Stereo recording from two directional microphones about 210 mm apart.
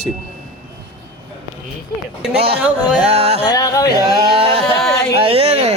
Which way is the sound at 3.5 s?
15° left (ahead or behind).